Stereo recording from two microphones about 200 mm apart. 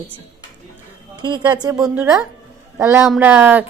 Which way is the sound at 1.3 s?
20° right (ahead or behind).